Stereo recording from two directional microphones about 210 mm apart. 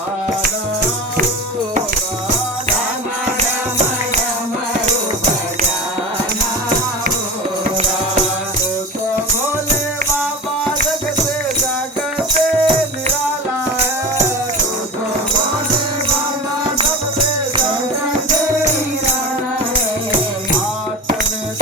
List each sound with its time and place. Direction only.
12.3 s music: 30° right (ahead or behind)